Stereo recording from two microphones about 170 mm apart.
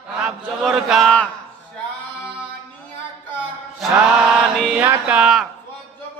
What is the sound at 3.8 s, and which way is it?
Chant, centre (ahead or behind).